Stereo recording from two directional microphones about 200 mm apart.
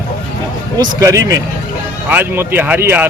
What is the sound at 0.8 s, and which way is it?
Speech, 15° right (ahead or behind).